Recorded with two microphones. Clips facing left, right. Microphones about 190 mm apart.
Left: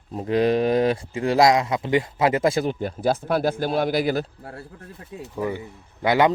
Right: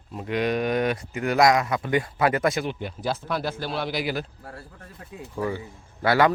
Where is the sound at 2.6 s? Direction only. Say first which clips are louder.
Left 6 dB; 45° left (ahead or behind).